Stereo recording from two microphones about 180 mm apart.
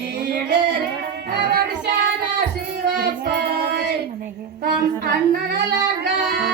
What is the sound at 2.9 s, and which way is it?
Music, 60° right (ahead or behind).